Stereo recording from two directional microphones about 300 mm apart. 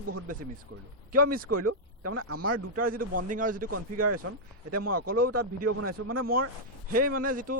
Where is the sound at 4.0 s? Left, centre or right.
Right.